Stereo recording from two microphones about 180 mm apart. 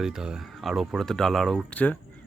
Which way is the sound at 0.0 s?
5° right (ahead or behind).